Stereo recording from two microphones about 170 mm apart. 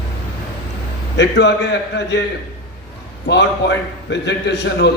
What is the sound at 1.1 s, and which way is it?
A man's voice, 90° left.